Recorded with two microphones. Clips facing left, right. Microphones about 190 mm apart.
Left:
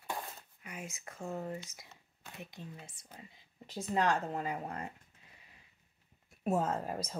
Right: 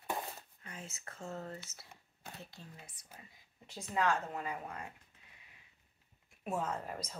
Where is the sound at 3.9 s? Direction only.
35° left (ahead or behind).